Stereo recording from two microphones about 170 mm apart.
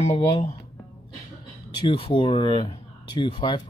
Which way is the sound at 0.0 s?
35° left (ahead or behind).